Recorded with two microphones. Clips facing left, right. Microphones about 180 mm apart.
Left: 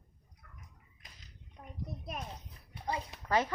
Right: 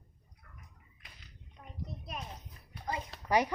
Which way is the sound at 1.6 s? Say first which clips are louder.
Left 2 dB; 25° left (ahead or behind).